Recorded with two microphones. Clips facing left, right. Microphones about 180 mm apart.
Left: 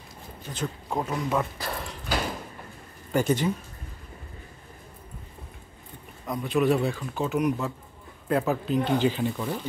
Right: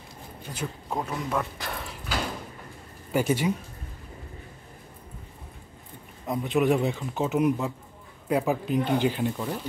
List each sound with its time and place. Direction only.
0.5 s speech: 10° right (ahead or behind)
0.9 s speech: centre (ahead or behind)
3.1 s speech: 10° right (ahead or behind)
6.2 s a man's voice: 20° right (ahead or behind)
9.2 s speech: centre (ahead or behind)